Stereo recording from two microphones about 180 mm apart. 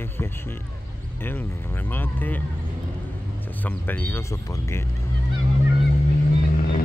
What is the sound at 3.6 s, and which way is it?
Speech, 10° left (ahead or behind).